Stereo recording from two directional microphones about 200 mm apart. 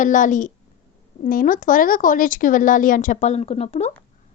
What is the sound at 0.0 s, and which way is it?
A woman's voice, 40° left (ahead or behind).